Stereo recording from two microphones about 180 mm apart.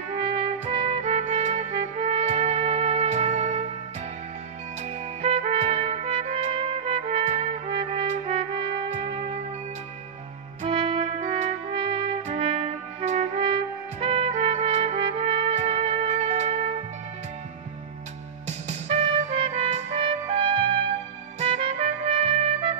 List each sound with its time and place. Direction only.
0.2 s music: 30° right (ahead or behind)
5.2 s trumpet: 35° right (ahead or behind)
10.6 s music: 30° right (ahead or behind)
11.7 s music: 30° right (ahead or behind)
13.4 s trumpet: 30° right (ahead or behind)
18.7 s trumpet: 35° right (ahead or behind)
21.4 s music: 30° right (ahead or behind)